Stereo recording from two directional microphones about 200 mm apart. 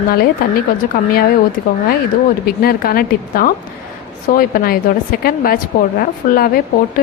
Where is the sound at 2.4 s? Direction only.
50° left (ahead or behind).